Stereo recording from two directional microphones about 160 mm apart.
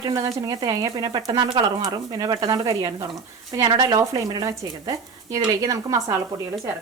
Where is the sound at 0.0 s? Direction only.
20° right (ahead or behind).